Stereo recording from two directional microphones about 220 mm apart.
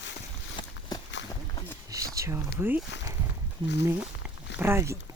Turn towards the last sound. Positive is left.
turn(degrees=-10)  # may be behind; listen again after turning